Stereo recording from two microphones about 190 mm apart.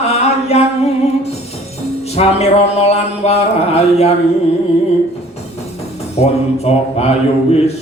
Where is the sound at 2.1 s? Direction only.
35° left (ahead or behind).